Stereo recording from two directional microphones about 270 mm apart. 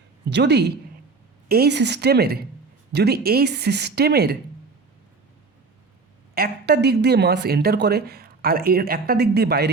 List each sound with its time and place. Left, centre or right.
0.3 s speech: right
6.3 s speech: right